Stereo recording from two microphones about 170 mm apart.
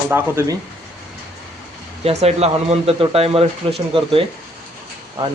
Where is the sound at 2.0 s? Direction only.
40° right (ahead or behind).